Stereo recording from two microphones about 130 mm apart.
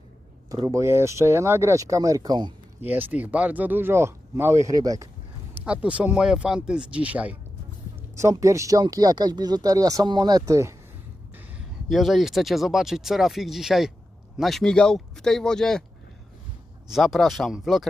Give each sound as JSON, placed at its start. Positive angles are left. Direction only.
{"t": 0.5, "sound": "speech", "side_deg": -25}
{"t": 2.8, "sound": "speech", "side_deg": -15}
{"t": 5.5, "sound": "speech", "side_deg": -10}
{"t": 8.1, "sound": "speech", "side_deg": -25}
{"t": 11.9, "sound": "speech", "side_deg": 0}
{"t": 16.9, "sound": "speech", "side_deg": 0}